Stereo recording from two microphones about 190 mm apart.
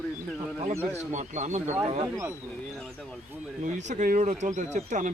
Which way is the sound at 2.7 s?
5° left (ahead or behind).